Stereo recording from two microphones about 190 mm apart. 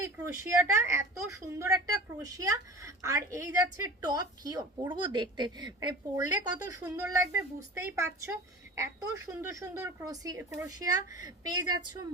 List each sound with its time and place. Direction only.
0.0 s a woman's voice: 15° right (ahead or behind)